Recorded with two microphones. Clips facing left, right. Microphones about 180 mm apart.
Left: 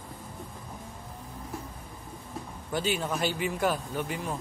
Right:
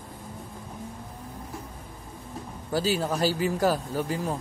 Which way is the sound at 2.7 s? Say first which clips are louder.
Right 4 dB; 35° right (ahead or behind).